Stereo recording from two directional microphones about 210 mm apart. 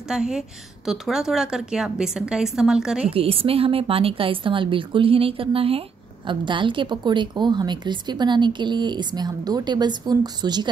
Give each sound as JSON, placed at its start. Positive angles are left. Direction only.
{"t": 0.1, "sound": "a woman's voice", "side_deg": -5}
{"t": 3.1, "sound": "a woman's voice", "side_deg": -25}